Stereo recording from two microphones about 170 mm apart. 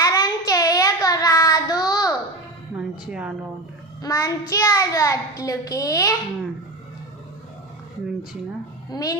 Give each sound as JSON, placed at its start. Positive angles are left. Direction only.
{"t": 0.0, "sound": "child singing", "side_deg": 20}
{"t": 2.7, "sound": "a sound", "side_deg": -5}
{"t": 4.0, "sound": "a child's voice", "side_deg": 20}
{"t": 8.9, "sound": "a child's voice", "side_deg": 20}